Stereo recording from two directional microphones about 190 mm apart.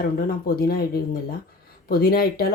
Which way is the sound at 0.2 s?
50° left (ahead or behind).